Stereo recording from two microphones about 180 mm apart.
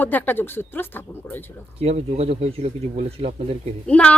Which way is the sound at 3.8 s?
5° left (ahead or behind).